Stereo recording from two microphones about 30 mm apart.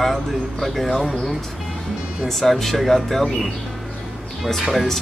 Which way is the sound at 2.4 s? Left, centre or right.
Centre.